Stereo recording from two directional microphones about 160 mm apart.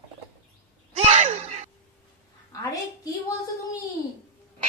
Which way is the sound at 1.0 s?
45° right (ahead or behind).